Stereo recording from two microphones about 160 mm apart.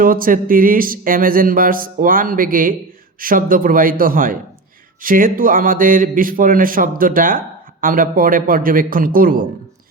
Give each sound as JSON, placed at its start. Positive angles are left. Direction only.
{"t": 0.0, "sound": "a man's voice", "side_deg": -60}